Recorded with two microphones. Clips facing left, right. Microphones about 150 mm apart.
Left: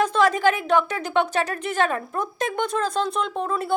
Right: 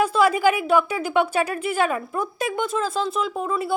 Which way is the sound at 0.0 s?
10° right (ahead or behind).